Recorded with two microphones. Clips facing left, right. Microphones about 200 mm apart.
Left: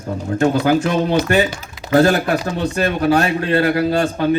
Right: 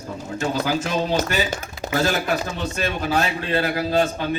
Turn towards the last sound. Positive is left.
turn(degrees=55)  # may be behind; listen again after turning